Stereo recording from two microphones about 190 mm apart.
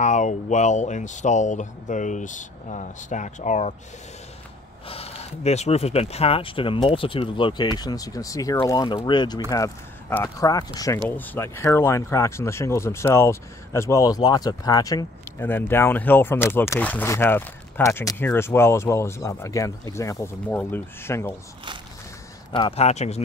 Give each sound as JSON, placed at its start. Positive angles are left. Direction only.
{"t": 0.0, "sound": "speech", "side_deg": 40}
{"t": 4.8, "sound": "speech", "side_deg": 30}
{"t": 22.5, "sound": "speech", "side_deg": 25}